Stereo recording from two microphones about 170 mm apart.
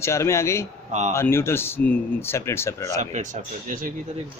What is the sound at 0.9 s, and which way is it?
Speech, 45° right (ahead or behind).